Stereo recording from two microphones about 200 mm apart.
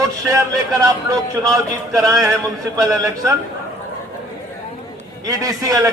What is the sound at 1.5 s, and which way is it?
A man's voice, 15° right (ahead or behind).